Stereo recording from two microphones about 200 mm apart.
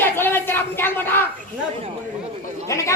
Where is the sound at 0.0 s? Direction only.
10° left (ahead or behind).